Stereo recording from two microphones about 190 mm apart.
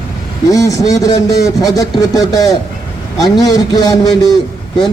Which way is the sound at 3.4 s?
20° left (ahead or behind).